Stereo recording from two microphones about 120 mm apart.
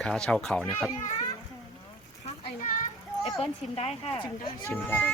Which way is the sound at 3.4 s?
55° left (ahead or behind).